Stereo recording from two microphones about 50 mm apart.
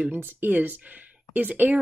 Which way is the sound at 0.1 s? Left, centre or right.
Right.